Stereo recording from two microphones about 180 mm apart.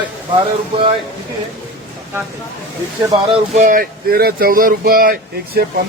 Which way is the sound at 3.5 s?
45° right (ahead or behind).